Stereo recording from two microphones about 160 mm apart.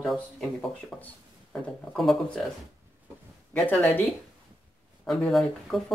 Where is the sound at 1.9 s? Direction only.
Centre (ahead or behind).